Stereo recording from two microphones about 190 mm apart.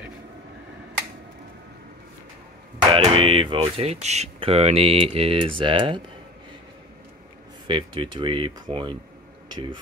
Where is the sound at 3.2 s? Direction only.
25° right (ahead or behind).